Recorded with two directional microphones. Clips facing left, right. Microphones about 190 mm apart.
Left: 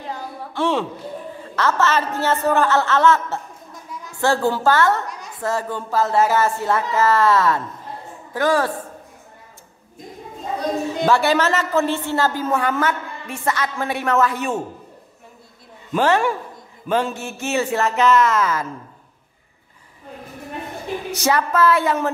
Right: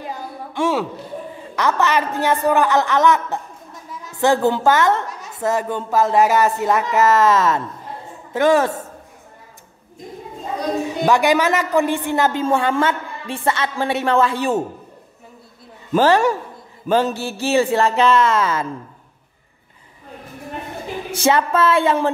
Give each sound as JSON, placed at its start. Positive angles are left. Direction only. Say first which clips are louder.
{"t": 0.0, "sound": "a sound", "louder": "right 1 dB", "side_deg": -10}
{"t": 1.5, "sound": "a woman's voice", "louder": "right 1 dB", "side_deg": -15}
{"t": 10.9, "sound": "a woman's voice", "louder": "right 2 dB", "side_deg": -15}
{"t": 15.9, "sound": "speech", "louder": "right 3 dB", "side_deg": -40}
{"t": 21.2, "sound": "a woman's voice", "louder": "right 2 dB", "side_deg": -25}